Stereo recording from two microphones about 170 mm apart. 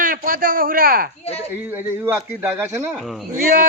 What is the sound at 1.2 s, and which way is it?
Speech, 35° left (ahead or behind).